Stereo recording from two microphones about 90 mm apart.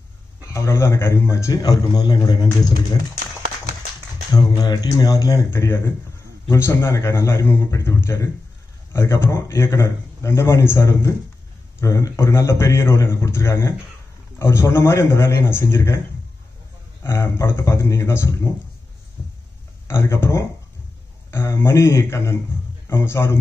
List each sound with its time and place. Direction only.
0.5 s speech: 30° left (ahead or behind)
1.5 s speech: 45° left (ahead or behind)
4.3 s speech: 50° left (ahead or behind)
5.5 s a man's voice: 30° left (ahead or behind)
17.0 s a man's voice: 30° left (ahead or behind)
19.9 s a man's voice: 30° left (ahead or behind)